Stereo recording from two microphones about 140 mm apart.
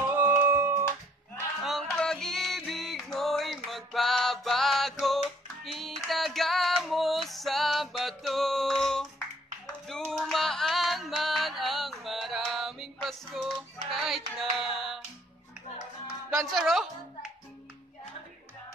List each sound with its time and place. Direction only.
0.0 s music: 15° right (ahead or behind)
1.6 s music: centre (ahead or behind)
10.1 s music: centre (ahead or behind)
16.4 s a woman's voice: centre (ahead or behind)